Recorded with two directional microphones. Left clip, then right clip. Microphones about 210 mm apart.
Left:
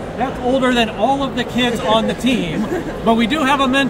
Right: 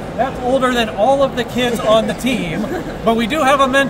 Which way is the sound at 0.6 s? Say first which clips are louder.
Right 1 dB; 25° right (ahead or behind).